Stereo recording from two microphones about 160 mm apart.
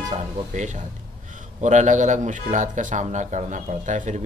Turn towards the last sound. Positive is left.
turn(degrees=-50)  # may be behind; listen again after turning